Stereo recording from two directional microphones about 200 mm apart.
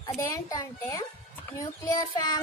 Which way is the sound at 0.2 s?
15° left (ahead or behind).